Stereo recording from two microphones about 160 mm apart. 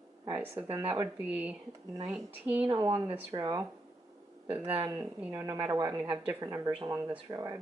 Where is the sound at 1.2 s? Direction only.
10° right (ahead or behind).